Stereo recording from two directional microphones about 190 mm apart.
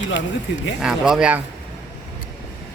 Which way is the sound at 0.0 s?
75° left (ahead or behind).